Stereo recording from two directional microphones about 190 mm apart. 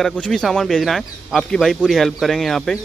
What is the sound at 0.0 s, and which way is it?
A man's voice, 5° left (ahead or behind).